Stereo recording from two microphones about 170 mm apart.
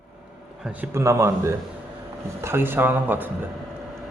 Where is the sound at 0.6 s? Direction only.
10° right (ahead or behind).